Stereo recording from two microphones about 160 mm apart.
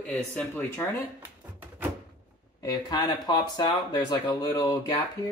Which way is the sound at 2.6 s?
25° left (ahead or behind).